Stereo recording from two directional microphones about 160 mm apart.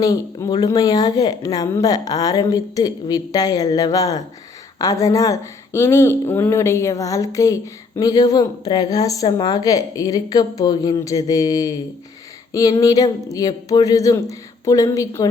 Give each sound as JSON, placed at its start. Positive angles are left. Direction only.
{"t": 0.0, "sound": "speech", "side_deg": 20}